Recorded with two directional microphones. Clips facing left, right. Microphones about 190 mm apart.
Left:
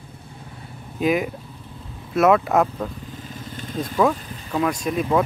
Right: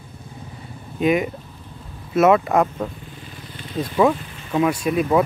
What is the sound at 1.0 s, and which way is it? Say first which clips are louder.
Speech: right 2 dB; centre (ahead or behind).